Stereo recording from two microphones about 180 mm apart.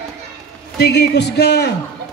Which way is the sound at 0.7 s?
65° left (ahead or behind).